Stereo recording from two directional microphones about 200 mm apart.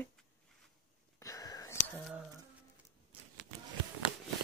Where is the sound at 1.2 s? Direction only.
15° left (ahead or behind).